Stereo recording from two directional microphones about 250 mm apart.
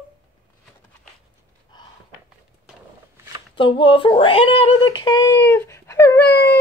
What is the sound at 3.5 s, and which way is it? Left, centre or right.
Speech, left.